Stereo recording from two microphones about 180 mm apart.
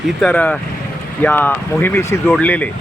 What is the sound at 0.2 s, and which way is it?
Speech, 5° left (ahead or behind).